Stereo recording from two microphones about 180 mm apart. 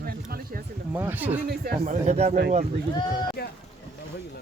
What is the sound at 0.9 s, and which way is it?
Speech, 10° right (ahead or behind).